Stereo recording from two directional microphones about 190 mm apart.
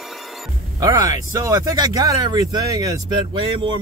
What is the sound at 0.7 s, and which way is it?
Speech, 20° right (ahead or behind).